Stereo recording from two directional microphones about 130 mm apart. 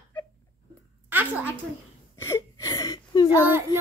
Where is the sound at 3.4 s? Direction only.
20° right (ahead or behind).